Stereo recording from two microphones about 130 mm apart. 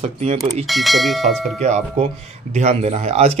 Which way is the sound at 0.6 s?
Centre (ahead or behind).